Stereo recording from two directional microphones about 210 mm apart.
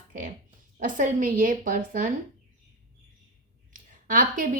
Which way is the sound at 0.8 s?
40° right (ahead or behind).